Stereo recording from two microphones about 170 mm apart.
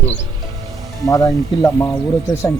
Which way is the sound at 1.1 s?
20° left (ahead or behind).